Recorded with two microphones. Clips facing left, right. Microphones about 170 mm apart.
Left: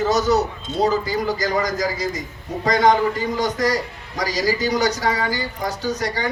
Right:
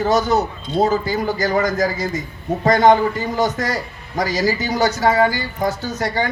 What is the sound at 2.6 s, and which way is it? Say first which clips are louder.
Speech: right 3 dB; 50° right (ahead or behind).